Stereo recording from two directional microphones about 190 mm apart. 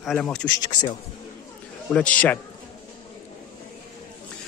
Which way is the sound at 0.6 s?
20° left (ahead or behind).